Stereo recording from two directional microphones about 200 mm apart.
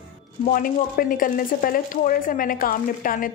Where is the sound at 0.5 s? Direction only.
45° left (ahead or behind).